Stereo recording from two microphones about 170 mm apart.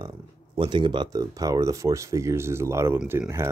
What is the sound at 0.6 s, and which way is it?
Speech, 30° right (ahead or behind).